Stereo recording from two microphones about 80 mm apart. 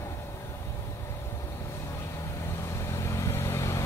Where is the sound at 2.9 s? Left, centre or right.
Left.